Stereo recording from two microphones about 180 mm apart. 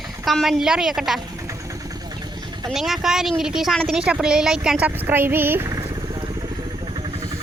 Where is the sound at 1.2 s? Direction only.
20° right (ahead or behind).